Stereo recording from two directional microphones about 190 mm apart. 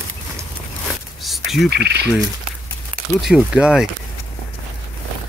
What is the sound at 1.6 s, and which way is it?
Speech, 60° right (ahead or behind).